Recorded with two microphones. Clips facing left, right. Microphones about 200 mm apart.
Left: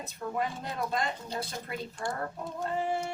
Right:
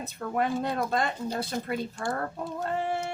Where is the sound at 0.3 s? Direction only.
70° right (ahead or behind).